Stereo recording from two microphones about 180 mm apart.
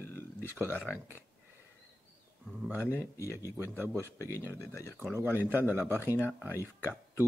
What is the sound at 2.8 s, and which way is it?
Speech, 15° left (ahead or behind).